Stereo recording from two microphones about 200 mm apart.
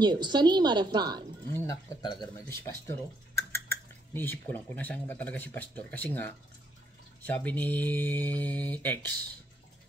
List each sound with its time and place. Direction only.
0.0 s a woman's voice: 20° right (ahead or behind)
1.5 s speech: 20° left (ahead or behind)